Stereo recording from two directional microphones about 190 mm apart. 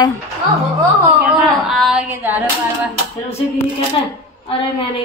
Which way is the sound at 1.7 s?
Centre (ahead or behind).